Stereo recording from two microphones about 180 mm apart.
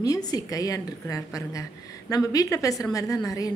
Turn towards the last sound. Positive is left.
turn(degrees=20)  # may be behind; listen again after turning